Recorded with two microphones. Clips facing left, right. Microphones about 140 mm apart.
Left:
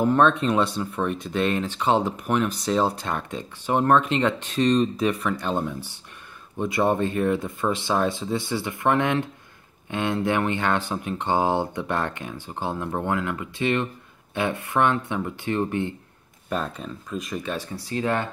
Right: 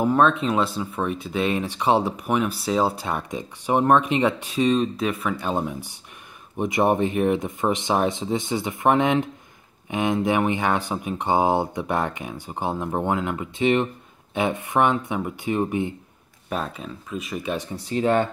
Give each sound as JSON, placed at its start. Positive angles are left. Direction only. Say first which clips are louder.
{"t": 0.0, "sound": "speech", "louder": "even", "side_deg": -5}
{"t": 17.5, "sound": "speech", "louder": "right 2 dB", "side_deg": -20}